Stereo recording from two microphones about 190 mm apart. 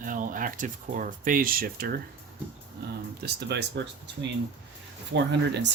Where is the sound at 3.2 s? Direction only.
60° right (ahead or behind).